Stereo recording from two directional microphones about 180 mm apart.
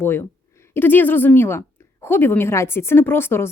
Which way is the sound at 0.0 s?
15° left (ahead or behind).